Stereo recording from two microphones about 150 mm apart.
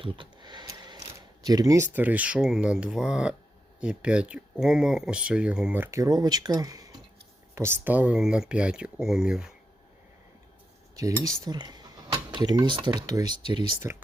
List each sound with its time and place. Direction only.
0.0 s a sound: 30° right (ahead or behind)
1.5 s speech: 25° right (ahead or behind); by 9.5 s 5° right (ahead or behind)
10.9 s cutlery: 20° right (ahead or behind)
11.4 s speech: 25° right (ahead or behind)
13.8 s cutlery: 20° right (ahead or behind)